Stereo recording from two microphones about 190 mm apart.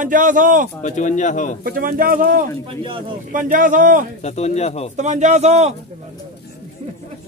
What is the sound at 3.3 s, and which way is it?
Speech, 45° right (ahead or behind).